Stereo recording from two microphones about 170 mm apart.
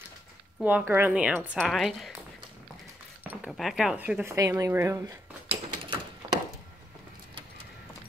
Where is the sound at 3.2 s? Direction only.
10° right (ahead or behind).